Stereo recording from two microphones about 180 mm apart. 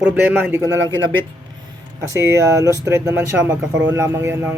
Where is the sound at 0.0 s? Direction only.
10° right (ahead or behind).